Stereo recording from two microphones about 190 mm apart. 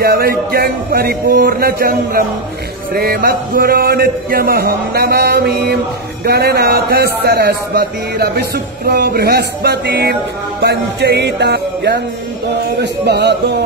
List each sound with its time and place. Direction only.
0.0 s a man's voice: 55° right (ahead or behind)